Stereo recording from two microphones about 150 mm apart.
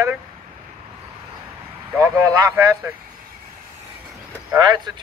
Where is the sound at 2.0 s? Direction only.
20° right (ahead or behind).